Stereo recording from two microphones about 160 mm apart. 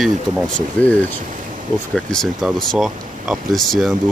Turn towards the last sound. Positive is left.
turn(degrees=0)  # may be behind; listen again after turning